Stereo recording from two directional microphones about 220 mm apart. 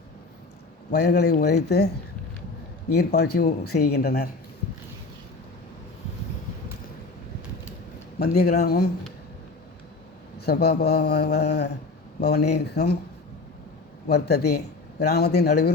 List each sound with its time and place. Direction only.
0.9 s a man's voice: 45° left (ahead or behind)
2.9 s a man's voice: 45° left (ahead or behind)
8.2 s a man's voice: 45° left (ahead or behind)
10.4 s a man's voice: 45° left (ahead or behind)
14.1 s a man's voice: 45° left (ahead or behind)